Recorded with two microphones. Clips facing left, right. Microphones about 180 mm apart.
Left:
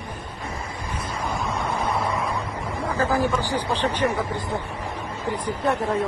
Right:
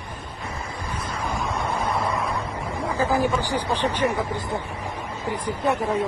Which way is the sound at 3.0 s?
15° right (ahead or behind).